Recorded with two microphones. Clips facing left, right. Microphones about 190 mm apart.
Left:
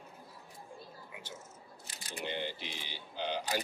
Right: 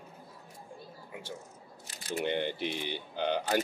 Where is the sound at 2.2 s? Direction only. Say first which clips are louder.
Right 6 dB; 55° right (ahead or behind).